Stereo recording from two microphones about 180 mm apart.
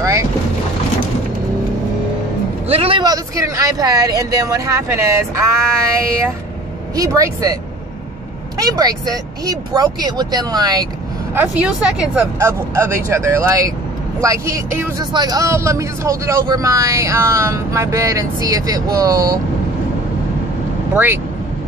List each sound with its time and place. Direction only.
0.0 s boat: 15° right (ahead or behind)
2.7 s speech: 30° right (ahead or behind); by 5.7 s 15° right (ahead or behind)
7.0 s speech: 20° right (ahead or behind)
8.5 s speech: 20° right (ahead or behind)
11.3 s speech: 5° right (ahead or behind)
20.9 s speech: 10° right (ahead or behind)